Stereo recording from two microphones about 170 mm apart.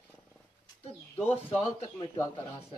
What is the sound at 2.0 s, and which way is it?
Speech, 20° left (ahead or behind).